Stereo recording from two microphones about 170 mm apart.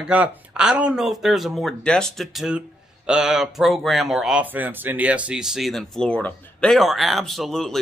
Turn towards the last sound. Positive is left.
turn(degrees=0)  # may be behind; listen again after turning